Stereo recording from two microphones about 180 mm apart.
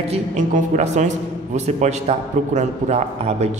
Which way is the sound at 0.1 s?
40° right (ahead or behind).